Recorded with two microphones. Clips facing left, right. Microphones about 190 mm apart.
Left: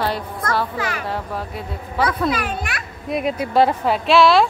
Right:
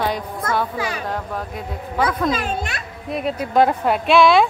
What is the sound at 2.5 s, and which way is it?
Speech, 25° right (ahead or behind).